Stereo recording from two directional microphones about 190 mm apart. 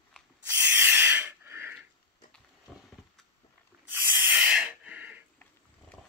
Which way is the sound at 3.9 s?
10° right (ahead or behind).